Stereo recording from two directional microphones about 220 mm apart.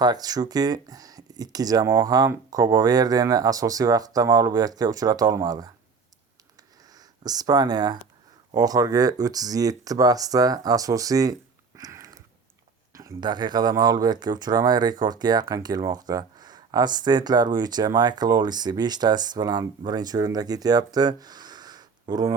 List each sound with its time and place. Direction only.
0.0 s speech: 20° right (ahead or behind)
6.9 s speech: 15° right (ahead or behind)
11.8 s a sound: 15° right (ahead or behind)
12.9 s speech: 15° right (ahead or behind)